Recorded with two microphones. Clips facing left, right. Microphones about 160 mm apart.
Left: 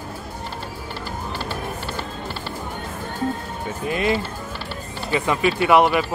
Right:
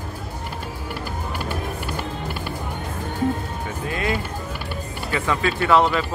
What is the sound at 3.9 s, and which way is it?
Speech, 20° left (ahead or behind).